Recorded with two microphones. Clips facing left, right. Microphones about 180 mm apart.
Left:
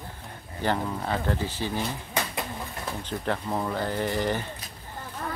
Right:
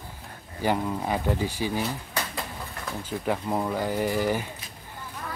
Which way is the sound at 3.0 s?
10° right (ahead or behind).